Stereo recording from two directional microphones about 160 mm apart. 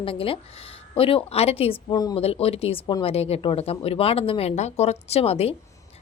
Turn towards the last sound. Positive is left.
turn(degrees=40)  # may be behind; listen again after turning